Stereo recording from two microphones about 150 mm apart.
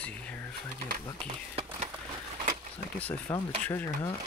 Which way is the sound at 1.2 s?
45° right (ahead or behind).